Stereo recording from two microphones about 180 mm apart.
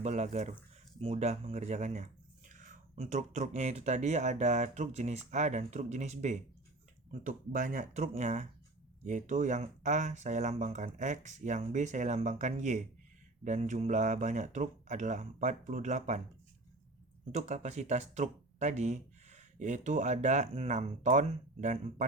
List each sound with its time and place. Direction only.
0.0 s speech: 40° right (ahead or behind)
17.3 s speech: 40° right (ahead or behind)